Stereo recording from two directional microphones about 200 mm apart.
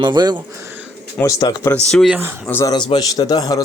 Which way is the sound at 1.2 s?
20° left (ahead or behind).